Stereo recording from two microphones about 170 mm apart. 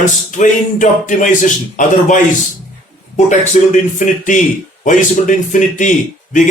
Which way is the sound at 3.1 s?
45° left (ahead or behind).